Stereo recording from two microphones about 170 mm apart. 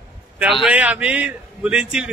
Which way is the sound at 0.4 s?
5° right (ahead or behind).